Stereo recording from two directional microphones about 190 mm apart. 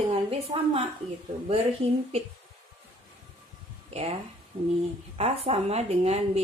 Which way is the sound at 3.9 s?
30° right (ahead or behind).